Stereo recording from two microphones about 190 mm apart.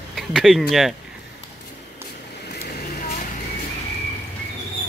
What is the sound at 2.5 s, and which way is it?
Vehicle, 55° left (ahead or behind).